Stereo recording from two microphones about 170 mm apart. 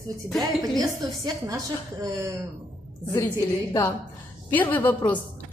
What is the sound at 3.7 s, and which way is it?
A woman's voice, 15° left (ahead or behind).